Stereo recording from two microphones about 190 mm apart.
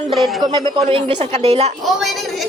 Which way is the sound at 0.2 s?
Centre (ahead or behind).